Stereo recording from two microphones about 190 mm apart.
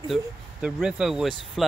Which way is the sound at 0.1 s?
5° right (ahead or behind).